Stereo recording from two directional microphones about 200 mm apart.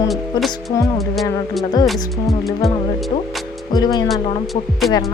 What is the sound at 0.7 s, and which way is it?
Speech, 15° left (ahead or behind).